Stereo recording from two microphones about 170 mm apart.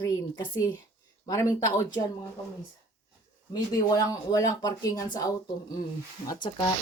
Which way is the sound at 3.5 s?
20° left (ahead or behind).